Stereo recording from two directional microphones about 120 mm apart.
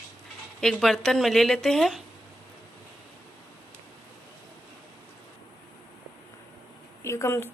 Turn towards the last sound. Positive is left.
turn(degrees=20)  # may be behind; listen again after turning